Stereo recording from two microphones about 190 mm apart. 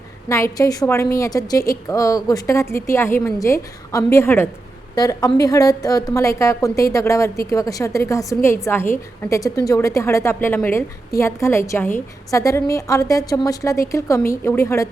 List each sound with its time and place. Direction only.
0.3 s a woman's voice: 15° left (ahead or behind)